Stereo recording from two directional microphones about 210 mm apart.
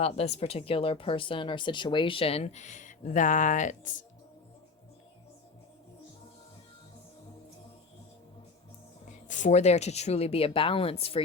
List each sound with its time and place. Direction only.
0.0 s speech: 30° left (ahead or behind)
9.2 s speech: 35° left (ahead or behind)